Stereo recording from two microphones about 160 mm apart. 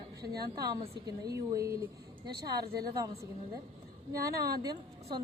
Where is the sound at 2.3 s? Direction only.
80° right.